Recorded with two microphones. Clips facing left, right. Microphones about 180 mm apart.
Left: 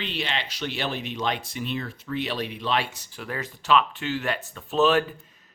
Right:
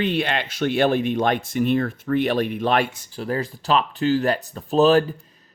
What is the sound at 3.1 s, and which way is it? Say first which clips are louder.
Speech: right 8 dB; 35° right (ahead or behind).